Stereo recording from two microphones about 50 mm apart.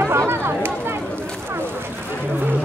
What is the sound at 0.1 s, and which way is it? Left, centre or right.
Chatter, right.